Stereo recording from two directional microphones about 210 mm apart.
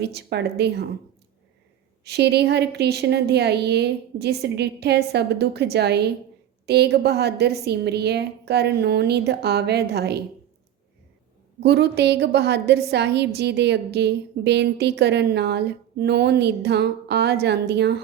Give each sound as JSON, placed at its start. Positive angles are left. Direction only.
{"t": 0.0, "sound": "a woman's voice", "side_deg": -50}
{"t": 2.0, "sound": "a woman's voice", "side_deg": -50}
{"t": 11.6, "sound": "a woman's voice", "side_deg": -50}